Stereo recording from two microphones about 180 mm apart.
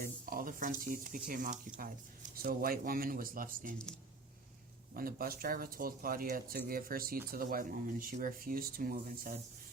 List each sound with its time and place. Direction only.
0.0 s speech: 50° right (ahead or behind)
4.9 s speech: 55° right (ahead or behind)